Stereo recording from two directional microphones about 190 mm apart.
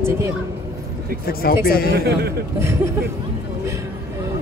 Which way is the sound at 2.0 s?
60° right (ahead or behind).